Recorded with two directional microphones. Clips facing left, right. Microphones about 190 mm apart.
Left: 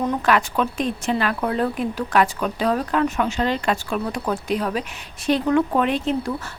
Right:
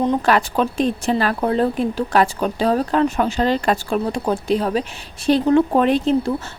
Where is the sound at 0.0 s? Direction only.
30° right (ahead or behind).